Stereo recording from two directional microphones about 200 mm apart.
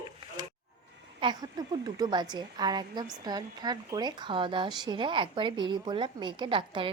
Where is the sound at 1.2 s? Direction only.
25° right (ahead or behind).